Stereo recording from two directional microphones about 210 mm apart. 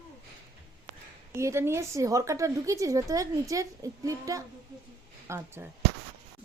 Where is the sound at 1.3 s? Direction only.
15° right (ahead or behind).